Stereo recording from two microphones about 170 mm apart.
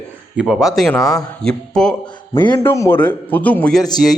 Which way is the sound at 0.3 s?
5° right (ahead or behind).